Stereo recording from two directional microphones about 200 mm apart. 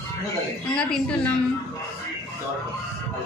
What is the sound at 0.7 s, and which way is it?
Speech, 5° left (ahead or behind).